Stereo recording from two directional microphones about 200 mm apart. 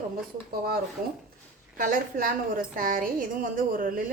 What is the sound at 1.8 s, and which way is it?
A woman's voice, 45° right (ahead or behind).